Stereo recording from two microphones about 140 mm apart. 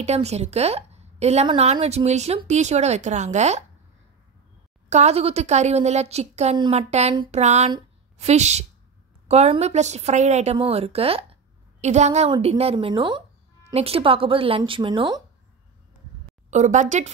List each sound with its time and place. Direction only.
0.0 s a woman's voice: 50° right (ahead or behind)
4.8 s speech: 55° right (ahead or behind)
6.5 s speech: 40° right (ahead or behind)
12.7 s a woman's voice: 35° right (ahead or behind)
16.4 s a woman's voice: 60° right (ahead or behind)